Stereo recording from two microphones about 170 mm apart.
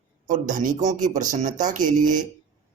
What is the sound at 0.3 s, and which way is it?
A man's voice, 50° right (ahead or behind).